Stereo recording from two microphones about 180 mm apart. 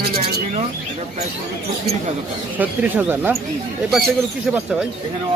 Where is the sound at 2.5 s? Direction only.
10° right (ahead or behind).